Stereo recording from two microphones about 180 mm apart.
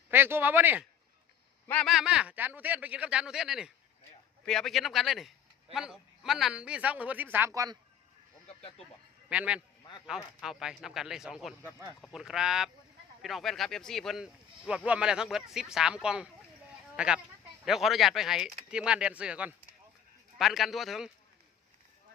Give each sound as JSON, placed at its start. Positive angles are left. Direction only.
{"t": 0.1, "sound": "a man's voice", "side_deg": -10}
{"t": 1.6, "sound": "a man's voice", "side_deg": 5}
{"t": 8.4, "sound": "speech", "side_deg": 30}
{"t": 9.3, "sound": "a man's voice", "side_deg": -5}